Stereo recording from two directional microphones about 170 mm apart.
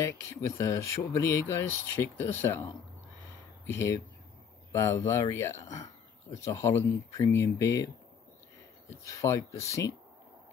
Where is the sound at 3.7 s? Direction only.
15° left (ahead or behind).